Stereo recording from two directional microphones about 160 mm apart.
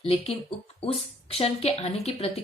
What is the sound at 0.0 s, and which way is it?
A woman's voice, 40° left (ahead or behind).